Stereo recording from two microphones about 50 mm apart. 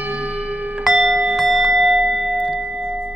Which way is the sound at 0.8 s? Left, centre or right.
Centre.